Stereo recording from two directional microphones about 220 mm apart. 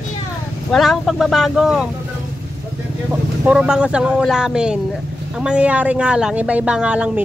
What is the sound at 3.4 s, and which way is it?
A woman's voice, 5° right (ahead or behind).